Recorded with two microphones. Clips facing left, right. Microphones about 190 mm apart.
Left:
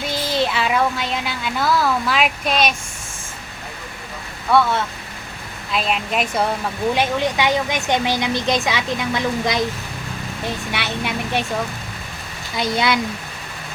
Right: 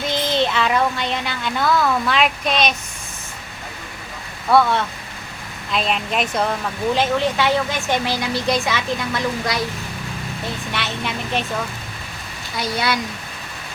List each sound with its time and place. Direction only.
0.1 s speech: 5° left (ahead or behind)
5.7 s speech: 5° left (ahead or behind)
6.9 s a woman's voice: 15° left (ahead or behind)
10.7 s a woman's voice: 10° left (ahead or behind)
12.5 s speech: 20° left (ahead or behind)